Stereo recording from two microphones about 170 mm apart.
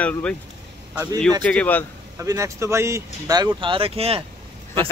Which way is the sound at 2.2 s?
20° right (ahead or behind).